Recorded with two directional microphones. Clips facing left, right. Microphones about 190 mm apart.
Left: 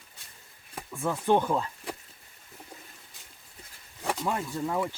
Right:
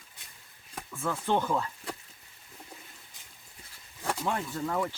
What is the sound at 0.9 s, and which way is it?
Speech, 15° left (ahead or behind).